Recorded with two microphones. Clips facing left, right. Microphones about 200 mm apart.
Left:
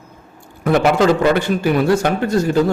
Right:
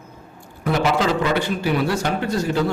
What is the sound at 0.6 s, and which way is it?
A man's voice, 55° left (ahead or behind).